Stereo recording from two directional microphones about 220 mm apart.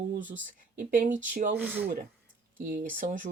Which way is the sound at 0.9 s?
35° right (ahead or behind).